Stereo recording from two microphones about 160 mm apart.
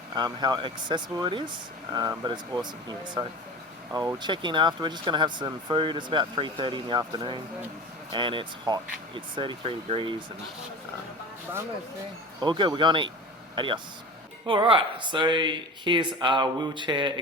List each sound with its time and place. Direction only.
0.1 s speech: 25° right (ahead or behind)
12.4 s speech: 30° right (ahead or behind)